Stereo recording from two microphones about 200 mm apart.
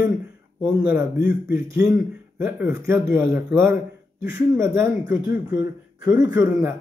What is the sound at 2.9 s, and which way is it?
Speech, 10° right (ahead or behind).